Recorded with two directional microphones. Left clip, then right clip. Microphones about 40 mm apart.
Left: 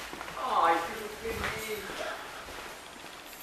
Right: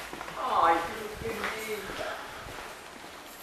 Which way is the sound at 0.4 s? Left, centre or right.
Centre.